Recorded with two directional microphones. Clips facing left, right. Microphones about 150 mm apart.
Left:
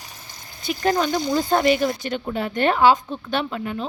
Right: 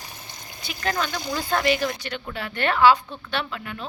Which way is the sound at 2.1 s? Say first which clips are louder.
Left 7 dB; 45° left (ahead or behind).